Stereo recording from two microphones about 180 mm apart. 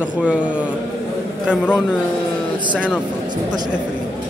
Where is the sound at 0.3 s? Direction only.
5° right (ahead or behind).